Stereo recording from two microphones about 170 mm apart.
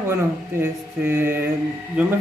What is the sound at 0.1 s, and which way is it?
A man's voice, 15° right (ahead or behind).